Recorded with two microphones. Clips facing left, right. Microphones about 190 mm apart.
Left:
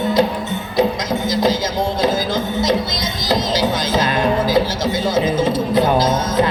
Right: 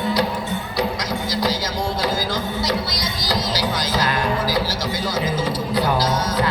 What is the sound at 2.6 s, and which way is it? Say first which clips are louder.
Music: left 5 dB; 25° left (ahead or behind).